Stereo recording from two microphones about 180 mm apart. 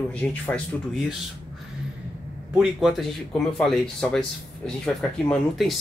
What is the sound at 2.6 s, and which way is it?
Speech, centre (ahead or behind).